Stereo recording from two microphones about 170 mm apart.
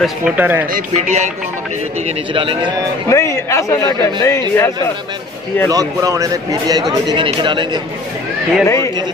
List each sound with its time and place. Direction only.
0.0 s speech: 10° right (ahead or behind)
0.7 s speech: 45° right (ahead or behind)
2.0 s a man's voice: 30° right (ahead or behind)
3.1 s a man's voice: 15° left (ahead or behind)
5.7 s speech: 20° right (ahead or behind)
8.6 s a man's voice: 15° left (ahead or behind)